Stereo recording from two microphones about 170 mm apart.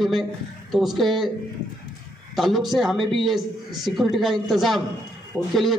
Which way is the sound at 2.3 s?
Centre (ahead or behind).